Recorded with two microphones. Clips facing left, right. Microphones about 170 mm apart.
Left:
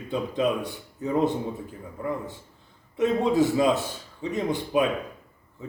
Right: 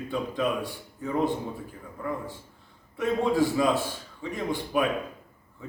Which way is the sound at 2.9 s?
20° left (ahead or behind).